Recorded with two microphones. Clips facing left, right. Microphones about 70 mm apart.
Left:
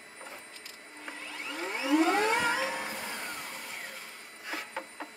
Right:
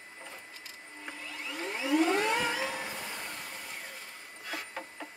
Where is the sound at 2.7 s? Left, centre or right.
Centre.